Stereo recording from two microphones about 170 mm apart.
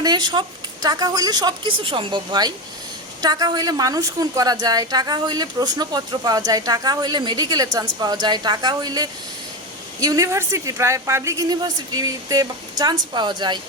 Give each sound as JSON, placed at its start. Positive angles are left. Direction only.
{"t": 0.0, "sound": "a woman's voice", "side_deg": -25}